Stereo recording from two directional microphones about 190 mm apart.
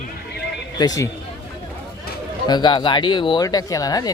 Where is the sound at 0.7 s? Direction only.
20° left (ahead or behind).